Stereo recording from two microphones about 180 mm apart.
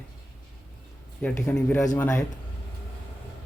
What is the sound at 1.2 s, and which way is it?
Speech, 5° left (ahead or behind).